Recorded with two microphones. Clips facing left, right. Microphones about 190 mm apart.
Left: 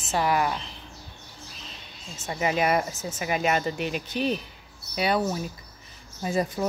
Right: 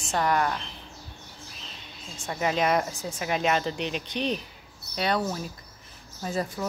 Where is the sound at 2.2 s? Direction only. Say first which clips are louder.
Left 1 dB; 5° left (ahead or behind).